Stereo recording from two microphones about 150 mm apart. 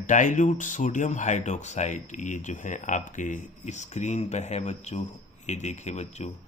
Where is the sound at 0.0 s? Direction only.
60° left (ahead or behind).